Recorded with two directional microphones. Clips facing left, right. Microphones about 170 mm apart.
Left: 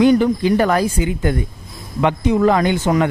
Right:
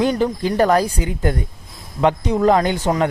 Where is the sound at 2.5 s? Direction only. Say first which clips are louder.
Right 4 dB; 35° right (ahead or behind).